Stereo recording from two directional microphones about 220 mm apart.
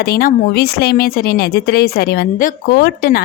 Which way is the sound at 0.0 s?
40° left (ahead or behind).